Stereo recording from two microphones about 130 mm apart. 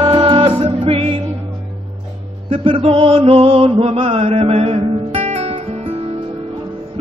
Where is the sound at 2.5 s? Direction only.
45° right (ahead or behind).